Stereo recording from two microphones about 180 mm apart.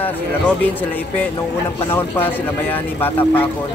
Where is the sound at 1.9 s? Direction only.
10° left (ahead or behind).